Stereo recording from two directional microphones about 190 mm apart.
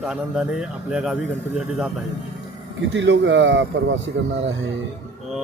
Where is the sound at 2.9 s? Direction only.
75° right (ahead or behind).